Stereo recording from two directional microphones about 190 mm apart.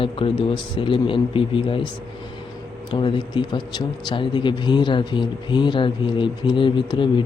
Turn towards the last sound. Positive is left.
turn(degrees=25)  # may be behind; listen again after turning